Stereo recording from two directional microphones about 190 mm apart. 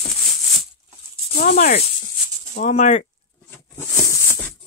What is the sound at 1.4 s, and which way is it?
Speech, 40° left (ahead or behind).